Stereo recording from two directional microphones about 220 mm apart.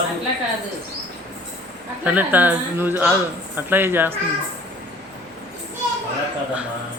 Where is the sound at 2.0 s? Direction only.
5° right (ahead or behind).